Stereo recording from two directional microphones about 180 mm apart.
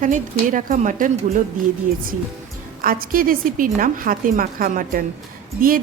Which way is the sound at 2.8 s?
50° right (ahead or behind).